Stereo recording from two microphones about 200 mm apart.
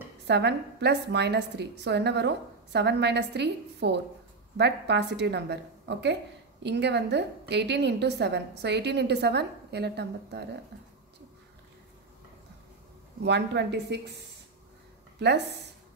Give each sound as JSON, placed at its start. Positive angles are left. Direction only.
{"t": 0.3, "sound": "a woman's voice", "side_deg": -60}
{"t": 13.2, "sound": "a woman's voice", "side_deg": -55}
{"t": 15.1, "sound": "a woman's voice", "side_deg": -55}